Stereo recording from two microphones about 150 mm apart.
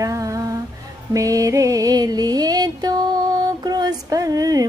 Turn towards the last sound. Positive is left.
turn(degrees=-25)  # may be behind; listen again after turning